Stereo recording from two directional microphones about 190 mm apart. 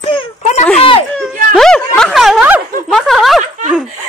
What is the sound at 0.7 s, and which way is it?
Speech, 30° left (ahead or behind).